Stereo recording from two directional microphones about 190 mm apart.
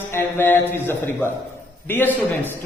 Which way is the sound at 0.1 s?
10° left (ahead or behind).